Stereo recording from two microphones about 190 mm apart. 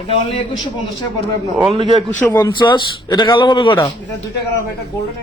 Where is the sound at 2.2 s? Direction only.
10° left (ahead or behind).